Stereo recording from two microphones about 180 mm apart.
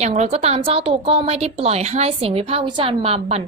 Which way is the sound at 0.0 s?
35° right (ahead or behind).